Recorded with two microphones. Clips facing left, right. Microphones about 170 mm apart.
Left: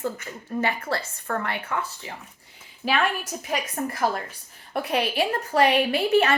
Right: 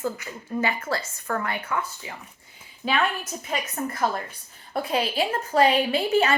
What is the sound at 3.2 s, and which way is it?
Speech, 40° left (ahead or behind).